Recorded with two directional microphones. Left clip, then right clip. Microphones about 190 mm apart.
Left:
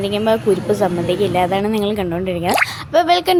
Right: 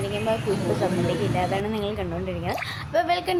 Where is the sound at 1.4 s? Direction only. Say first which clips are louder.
Left 9 dB; 40° left (ahead or behind).